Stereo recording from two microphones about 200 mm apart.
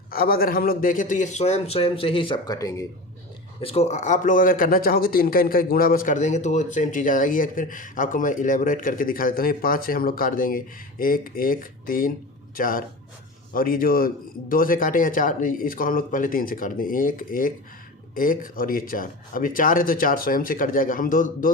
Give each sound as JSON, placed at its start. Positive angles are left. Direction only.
{"t": 0.1, "sound": "speech", "side_deg": 50}
{"t": 3.6, "sound": "speech", "side_deg": 30}